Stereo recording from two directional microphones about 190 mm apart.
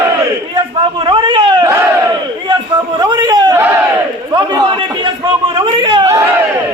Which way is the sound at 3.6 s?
15° right (ahead or behind).